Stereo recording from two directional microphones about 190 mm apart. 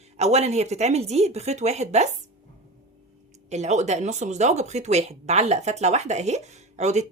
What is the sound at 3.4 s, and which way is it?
Speech, 35° right (ahead or behind).